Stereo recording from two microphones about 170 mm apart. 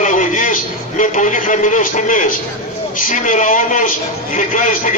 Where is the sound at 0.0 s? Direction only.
45° left (ahead or behind).